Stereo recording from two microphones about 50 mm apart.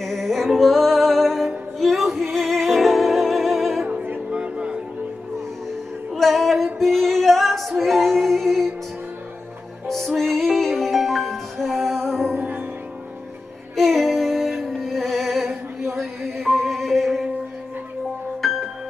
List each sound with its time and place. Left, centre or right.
0.0 s music: centre
4.3 s a sound: right
6.1 s music: centre
9.8 s music: centre
13.7 s music: centre
18.4 s music: centre